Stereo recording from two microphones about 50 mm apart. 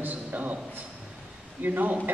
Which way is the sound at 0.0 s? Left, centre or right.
Right.